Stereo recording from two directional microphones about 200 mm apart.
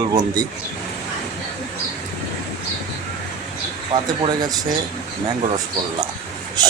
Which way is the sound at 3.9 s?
20° right (ahead or behind).